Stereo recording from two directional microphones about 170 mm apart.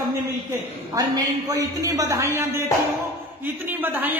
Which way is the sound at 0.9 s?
20° right (ahead or behind).